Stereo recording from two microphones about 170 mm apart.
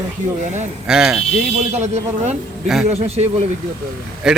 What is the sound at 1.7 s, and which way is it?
Speech, 40° right (ahead or behind).